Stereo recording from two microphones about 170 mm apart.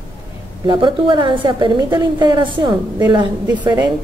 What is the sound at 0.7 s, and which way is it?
A woman's voice, 30° right (ahead or behind).